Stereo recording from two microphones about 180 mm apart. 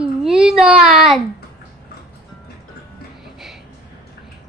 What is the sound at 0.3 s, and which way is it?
Speech, centre (ahead or behind).